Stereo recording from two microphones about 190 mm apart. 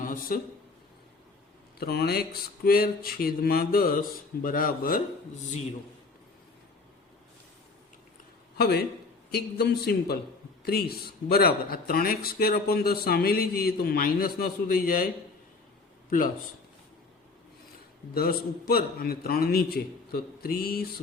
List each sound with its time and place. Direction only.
0.0 s a sound: 45° left (ahead or behind)
1.8 s a man's voice: 55° left (ahead or behind)
8.5 s a man's voice: 60° left (ahead or behind)
18.1 s a man's voice: 50° left (ahead or behind)